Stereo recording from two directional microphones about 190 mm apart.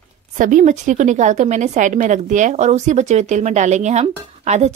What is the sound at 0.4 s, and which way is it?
A woman's voice, 40° right (ahead or behind).